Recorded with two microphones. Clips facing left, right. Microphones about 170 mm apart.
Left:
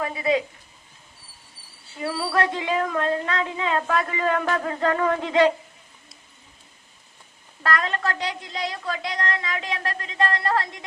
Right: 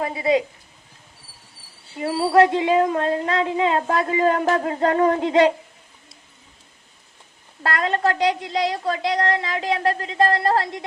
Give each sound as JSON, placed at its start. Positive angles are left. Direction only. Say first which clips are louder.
{"t": 0.0, "sound": "a woman's voice", "louder": "right 3 dB", "side_deg": -30}
{"t": 2.0, "sound": "speech", "louder": "right 5 dB", "side_deg": -15}
{"t": 2.3, "sound": "a woman's voice", "louder": "right 9 dB", "side_deg": -25}
{"t": 7.6, "sound": "a woman's voice", "louder": "right 4 dB", "side_deg": -30}